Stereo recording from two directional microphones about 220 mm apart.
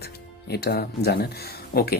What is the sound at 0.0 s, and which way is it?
Speech, 45° left (ahead or behind).